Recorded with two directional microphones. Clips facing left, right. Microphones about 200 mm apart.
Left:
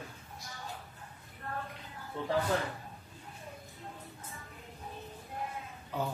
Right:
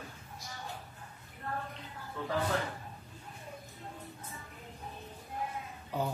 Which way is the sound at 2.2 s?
25° left (ahead or behind).